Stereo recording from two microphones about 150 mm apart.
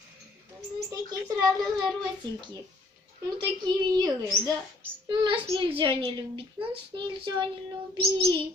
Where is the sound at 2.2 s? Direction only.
30° right (ahead or behind).